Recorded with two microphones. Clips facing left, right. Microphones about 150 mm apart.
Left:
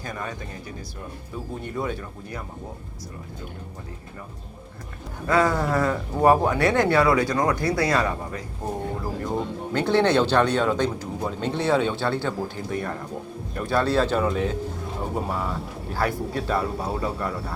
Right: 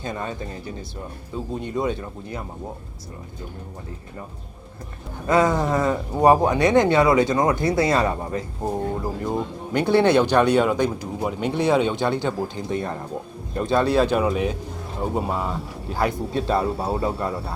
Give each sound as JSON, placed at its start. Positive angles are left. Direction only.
{"t": 0.0, "sound": "speech", "side_deg": -25}
{"t": 1.6, "sound": "speech", "side_deg": -20}
{"t": 5.2, "sound": "speech", "side_deg": -20}
{"t": 9.7, "sound": "speech", "side_deg": -10}